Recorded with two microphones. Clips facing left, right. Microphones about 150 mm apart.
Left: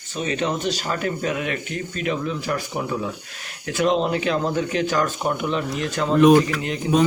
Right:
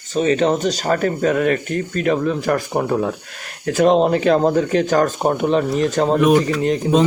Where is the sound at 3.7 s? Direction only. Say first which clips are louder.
Right 6 dB; 40° right (ahead or behind).